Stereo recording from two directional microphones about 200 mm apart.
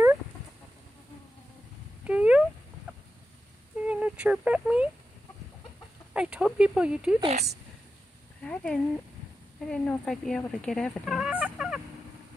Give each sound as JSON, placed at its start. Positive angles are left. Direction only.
{"t": 2.0, "sound": "cat", "side_deg": -5}
{"t": 3.8, "sound": "a sound", "side_deg": -5}
{"t": 6.1, "sound": "speech", "side_deg": -5}
{"t": 7.2, "sound": "speech", "side_deg": -30}
{"t": 8.5, "sound": "speech", "side_deg": 5}